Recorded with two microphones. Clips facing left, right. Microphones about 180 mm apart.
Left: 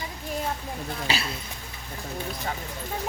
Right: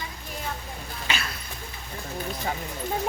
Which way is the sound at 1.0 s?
30° left (ahead or behind).